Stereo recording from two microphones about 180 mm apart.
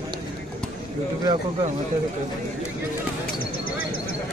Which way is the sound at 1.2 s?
25° right (ahead or behind).